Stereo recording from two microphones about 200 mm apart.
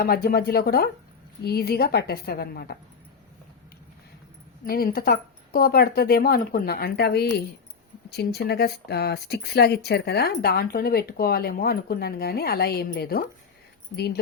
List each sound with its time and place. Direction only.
0.0 s speech: 50° left (ahead or behind)
4.6 s speech: 50° left (ahead or behind)